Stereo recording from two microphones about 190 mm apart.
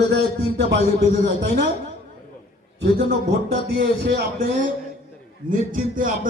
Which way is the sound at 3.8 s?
55° right (ahead or behind).